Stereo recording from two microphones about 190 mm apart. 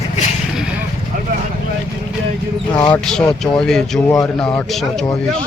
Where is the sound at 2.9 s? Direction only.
5° left (ahead or behind).